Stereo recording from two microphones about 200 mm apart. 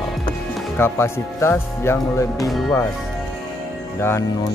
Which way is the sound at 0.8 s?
15° left (ahead or behind).